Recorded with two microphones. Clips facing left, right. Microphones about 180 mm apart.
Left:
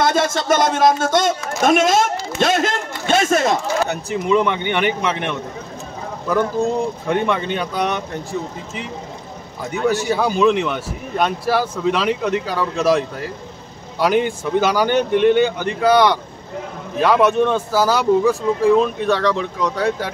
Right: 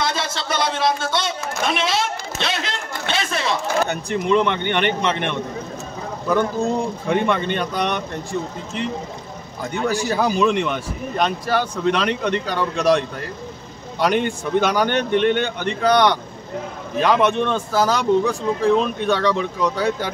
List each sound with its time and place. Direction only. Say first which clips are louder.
0.0 s speech: left 7 dB; 50° left (ahead or behind)
3.1 s a sound: left 8 dB; 45° left (ahead or behind)
3.8 s a man's voice: left 1 dB; 5° left (ahead or behind)